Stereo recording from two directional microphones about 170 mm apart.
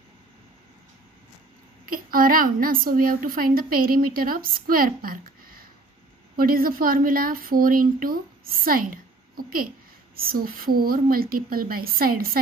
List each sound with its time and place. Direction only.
1.9 s a woman's voice: 55° right (ahead or behind)